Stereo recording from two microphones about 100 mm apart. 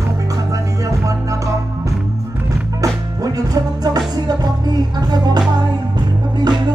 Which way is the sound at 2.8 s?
35° right (ahead or behind).